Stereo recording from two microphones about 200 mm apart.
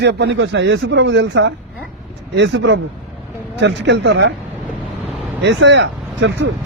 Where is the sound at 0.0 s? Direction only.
60° right (ahead or behind).